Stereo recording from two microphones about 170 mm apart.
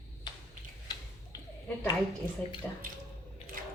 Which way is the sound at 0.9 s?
25° left (ahead or behind).